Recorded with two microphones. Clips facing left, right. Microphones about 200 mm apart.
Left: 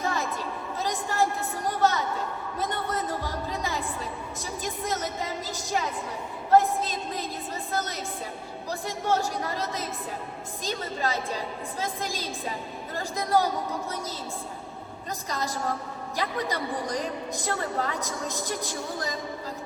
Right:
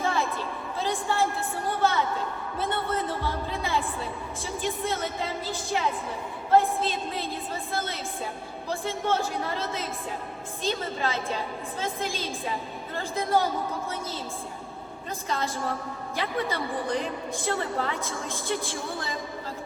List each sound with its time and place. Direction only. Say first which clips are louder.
0.0 s a sound: right 2 dB; 40° left (ahead or behind)
7.7 s a woman's voice: left 3 dB; 40° left (ahead or behind)
15.3 s a woman's voice: right 1 dB; 40° left (ahead or behind)